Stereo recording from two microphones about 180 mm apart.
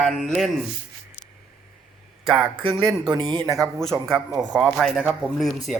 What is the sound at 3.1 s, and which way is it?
Speech, 25° right (ahead or behind).